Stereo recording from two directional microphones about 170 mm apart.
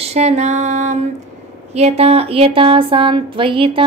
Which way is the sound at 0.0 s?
40° right (ahead or behind).